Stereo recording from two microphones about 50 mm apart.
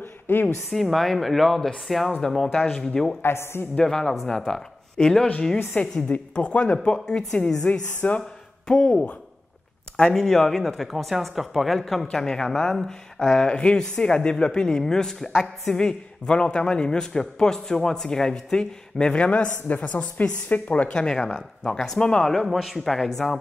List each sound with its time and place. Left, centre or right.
0.0 s a sound: left
0.7 s speech: centre
3.2 s a woman's voice: left
3.7 s speech: centre
5.7 s a woman's voice: left
10.1 s a woman's voice: centre; by 21.1 s left
21.1 s speech: centre
22.5 s speech: centre